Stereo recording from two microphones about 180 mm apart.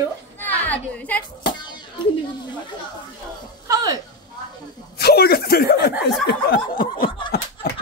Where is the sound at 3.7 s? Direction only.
20° right (ahead or behind).